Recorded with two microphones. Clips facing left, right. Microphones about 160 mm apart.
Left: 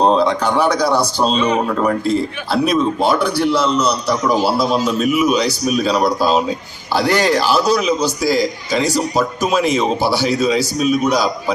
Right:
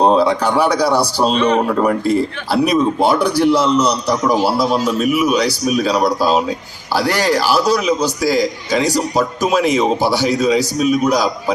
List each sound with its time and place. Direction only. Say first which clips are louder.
0.0 s speech: right 1 dB; 5° right (ahead or behind)
1.4 s speech: right 3 dB; 10° left (ahead or behind)
1.6 s a man's voice: right 2 dB; 10° right (ahead or behind)